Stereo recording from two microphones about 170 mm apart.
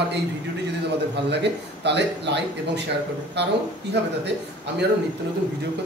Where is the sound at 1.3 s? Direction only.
90° right.